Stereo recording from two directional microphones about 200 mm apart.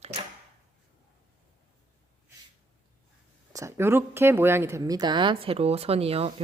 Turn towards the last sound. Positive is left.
turn(degrees=-30)  # may be behind; listen again after turning